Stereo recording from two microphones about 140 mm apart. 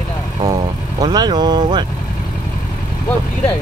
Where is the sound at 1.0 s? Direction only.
30° right (ahead or behind).